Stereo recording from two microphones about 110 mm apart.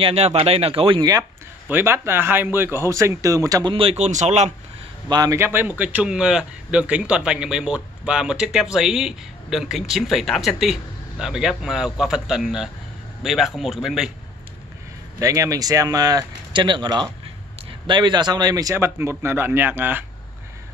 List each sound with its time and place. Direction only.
0.0 s speech: 70° right (ahead or behind)
1.7 s a man's voice: 20° right (ahead or behind)
3.6 s speech: 55° right (ahead or behind); by 4.5 s 90° right
5.1 s speech: 35° right (ahead or behind)
5.4 s speech: 20° right (ahead or behind)
15.1 s a man's voice: 30° right (ahead or behind)